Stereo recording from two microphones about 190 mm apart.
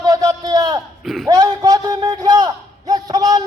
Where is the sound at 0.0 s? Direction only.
20° right (ahead or behind).